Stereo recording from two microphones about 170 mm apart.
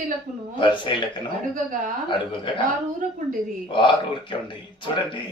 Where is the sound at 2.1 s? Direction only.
30° left (ahead or behind).